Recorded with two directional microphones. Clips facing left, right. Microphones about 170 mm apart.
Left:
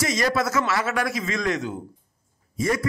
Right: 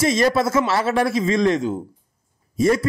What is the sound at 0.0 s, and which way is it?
A man's voice, 25° right (ahead or behind).